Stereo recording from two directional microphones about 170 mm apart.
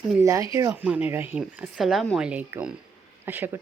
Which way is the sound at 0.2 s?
20° right (ahead or behind).